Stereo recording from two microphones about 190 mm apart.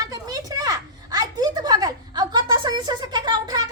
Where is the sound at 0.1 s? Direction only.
20° right (ahead or behind).